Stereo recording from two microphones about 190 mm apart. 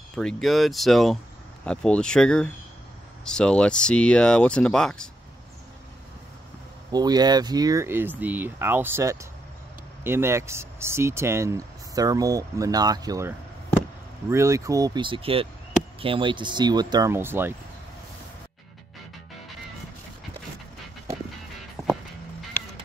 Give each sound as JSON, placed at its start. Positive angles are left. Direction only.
{"t": 0.1, "sound": "speech", "side_deg": 5}
{"t": 6.9, "sound": "speech", "side_deg": -20}
{"t": 14.3, "sound": "speech", "side_deg": -15}
{"t": 21.8, "sound": "music", "side_deg": 0}